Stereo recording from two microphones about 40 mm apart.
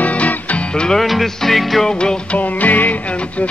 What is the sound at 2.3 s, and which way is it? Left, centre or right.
Music, left.